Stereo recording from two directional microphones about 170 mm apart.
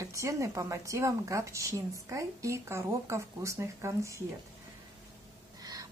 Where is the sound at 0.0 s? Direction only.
20° right (ahead or behind).